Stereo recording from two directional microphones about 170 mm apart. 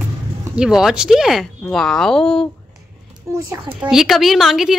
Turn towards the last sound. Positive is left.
turn(degrees=0)  # may be behind; listen again after turning